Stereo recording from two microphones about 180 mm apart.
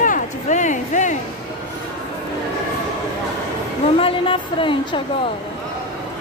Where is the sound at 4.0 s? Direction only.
30° left (ahead or behind).